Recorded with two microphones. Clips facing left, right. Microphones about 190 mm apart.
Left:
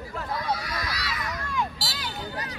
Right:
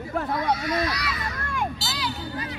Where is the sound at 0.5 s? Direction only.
25° right (ahead or behind).